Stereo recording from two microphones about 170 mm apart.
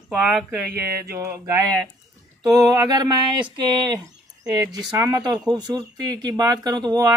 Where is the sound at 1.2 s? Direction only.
15° right (ahead or behind).